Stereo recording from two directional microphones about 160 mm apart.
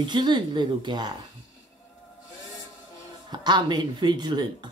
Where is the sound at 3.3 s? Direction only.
25° right (ahead or behind).